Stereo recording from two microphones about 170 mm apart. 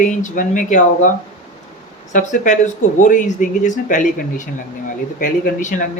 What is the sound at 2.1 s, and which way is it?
Speech, 45° left (ahead or behind).